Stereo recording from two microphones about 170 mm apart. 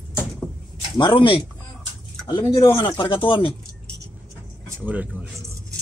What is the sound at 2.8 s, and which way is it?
Speech, 30° left (ahead or behind).